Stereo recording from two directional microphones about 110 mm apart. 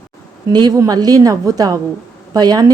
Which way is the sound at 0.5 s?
40° right (ahead or behind).